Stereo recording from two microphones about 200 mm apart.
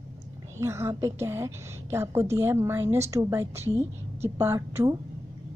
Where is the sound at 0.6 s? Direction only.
15° right (ahead or behind).